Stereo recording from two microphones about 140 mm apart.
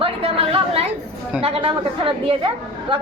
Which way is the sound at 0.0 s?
45° right (ahead or behind).